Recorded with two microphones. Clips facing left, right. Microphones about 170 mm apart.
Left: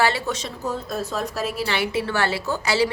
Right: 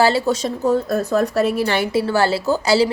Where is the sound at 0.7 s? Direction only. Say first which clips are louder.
Right 9 dB; 60° right (ahead or behind).